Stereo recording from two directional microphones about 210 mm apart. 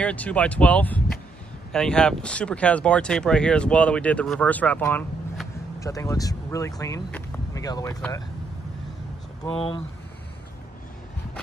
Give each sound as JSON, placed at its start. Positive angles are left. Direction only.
{"t": 0.0, "sound": "speech", "side_deg": 5}
{"t": 9.4, "sound": "speech", "side_deg": 25}